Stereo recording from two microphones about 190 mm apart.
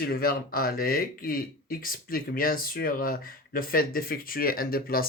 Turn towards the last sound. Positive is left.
turn(degrees=50)  # may be behind; listen again after turning